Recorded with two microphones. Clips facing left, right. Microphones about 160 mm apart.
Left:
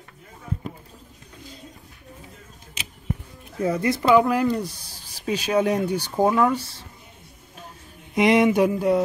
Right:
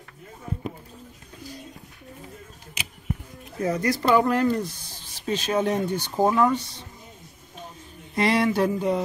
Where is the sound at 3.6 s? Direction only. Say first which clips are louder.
Left 2 dB; 30° left (ahead or behind).